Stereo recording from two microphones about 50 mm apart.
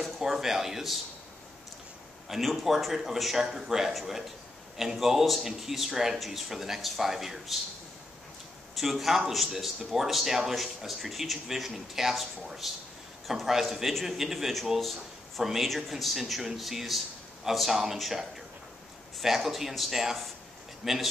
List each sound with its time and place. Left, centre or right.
0.0 s speech: centre
2.2 s speech: centre
8.7 s a man's voice: centre